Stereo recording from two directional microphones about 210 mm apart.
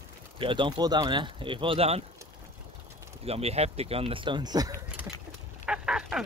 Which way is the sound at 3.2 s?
30° right (ahead or behind).